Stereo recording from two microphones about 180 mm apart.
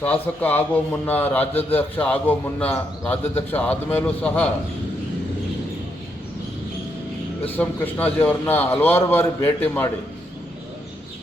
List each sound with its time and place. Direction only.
0.0 s a man's voice: 10° left (ahead or behind)
7.5 s a man's voice: 10° left (ahead or behind)